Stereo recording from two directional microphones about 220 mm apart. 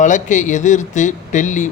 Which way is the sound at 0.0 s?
35° left (ahead or behind).